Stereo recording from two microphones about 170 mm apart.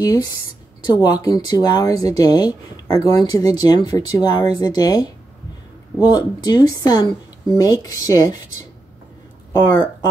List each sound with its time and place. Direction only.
0.0 s speech: 20° left (ahead or behind)